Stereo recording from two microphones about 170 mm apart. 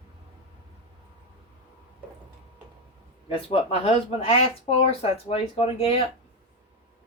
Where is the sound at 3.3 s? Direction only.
35° left (ahead or behind).